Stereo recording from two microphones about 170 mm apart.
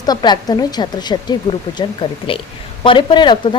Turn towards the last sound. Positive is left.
turn(degrees=25)  # may be behind; listen again after turning